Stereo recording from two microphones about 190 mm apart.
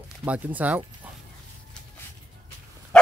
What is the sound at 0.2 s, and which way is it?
Speech, 10° right (ahead or behind).